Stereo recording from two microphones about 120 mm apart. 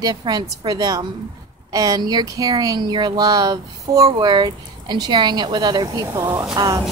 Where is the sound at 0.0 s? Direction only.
35° right (ahead or behind).